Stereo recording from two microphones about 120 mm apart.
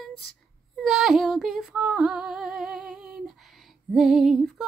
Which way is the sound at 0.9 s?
Centre (ahead or behind).